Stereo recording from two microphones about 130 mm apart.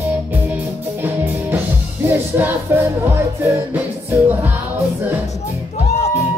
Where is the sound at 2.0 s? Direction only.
15° right (ahead or behind).